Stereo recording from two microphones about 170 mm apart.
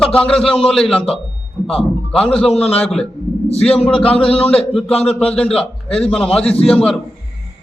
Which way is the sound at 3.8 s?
35° left (ahead or behind).